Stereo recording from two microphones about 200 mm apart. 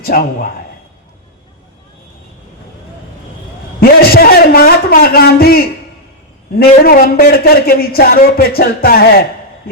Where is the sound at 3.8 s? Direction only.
50° left (ahead or behind).